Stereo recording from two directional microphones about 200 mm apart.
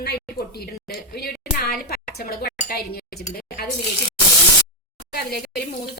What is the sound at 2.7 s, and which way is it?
Speech, 50° left (ahead or behind).